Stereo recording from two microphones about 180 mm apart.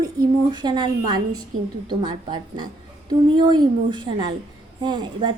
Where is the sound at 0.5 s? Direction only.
25° right (ahead or behind).